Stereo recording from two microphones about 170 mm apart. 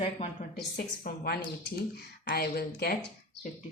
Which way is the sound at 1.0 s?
65° left (ahead or behind).